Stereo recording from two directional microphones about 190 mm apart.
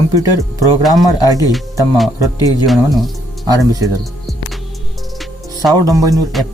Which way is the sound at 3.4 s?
20° right (ahead or behind).